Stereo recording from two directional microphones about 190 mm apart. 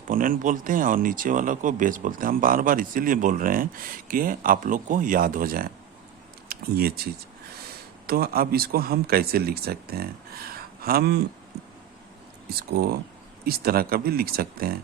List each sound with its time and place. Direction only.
0.1 s speech: 45° right (ahead or behind)
12.5 s speech: 55° right (ahead or behind)